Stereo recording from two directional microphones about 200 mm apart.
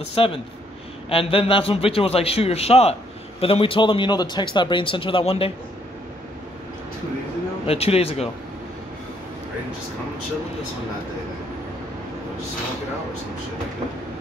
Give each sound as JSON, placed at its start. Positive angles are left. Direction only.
{"t": 0.1, "sound": "a man's voice", "side_deg": 25}
{"t": 7.6, "sound": "a man's voice", "side_deg": 30}